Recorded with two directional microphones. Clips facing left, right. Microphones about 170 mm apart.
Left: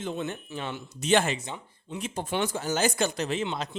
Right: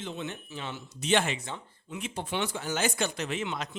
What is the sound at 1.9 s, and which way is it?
Speech, 40° left (ahead or behind).